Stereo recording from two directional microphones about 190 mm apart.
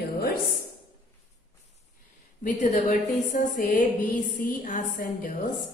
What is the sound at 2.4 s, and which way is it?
A woman's voice, 40° left (ahead or behind).